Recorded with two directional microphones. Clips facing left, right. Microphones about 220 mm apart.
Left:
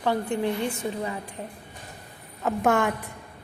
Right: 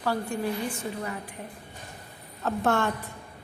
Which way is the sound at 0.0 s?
20° left (ahead or behind).